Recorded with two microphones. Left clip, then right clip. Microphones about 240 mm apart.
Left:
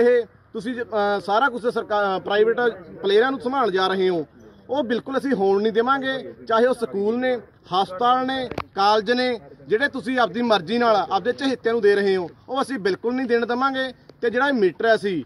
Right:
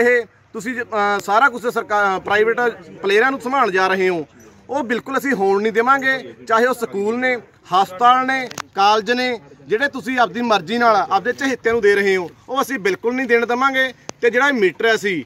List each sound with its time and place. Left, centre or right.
0.0 s a man's voice: centre
11.5 s speech: centre
12.9 s a man's voice: centre
13.4 s speech: centre